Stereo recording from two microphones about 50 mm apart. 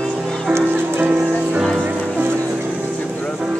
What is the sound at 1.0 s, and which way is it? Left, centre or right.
Music, right.